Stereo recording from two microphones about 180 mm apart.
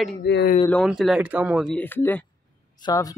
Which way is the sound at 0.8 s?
Centre (ahead or behind).